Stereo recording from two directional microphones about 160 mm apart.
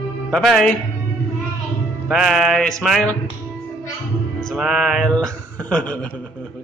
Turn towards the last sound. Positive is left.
turn(degrees=5)  # may be behind; listen again after turning